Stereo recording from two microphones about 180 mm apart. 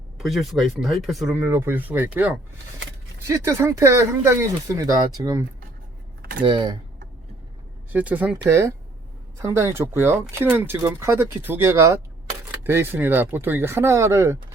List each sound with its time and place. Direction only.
0.2 s speech: centre (ahead or behind)
1.4 s speech: 15° right (ahead or behind)
7.9 s speech: 10° right (ahead or behind)